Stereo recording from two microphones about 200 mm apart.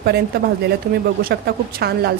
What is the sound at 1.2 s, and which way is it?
Speech, 50° right (ahead or behind).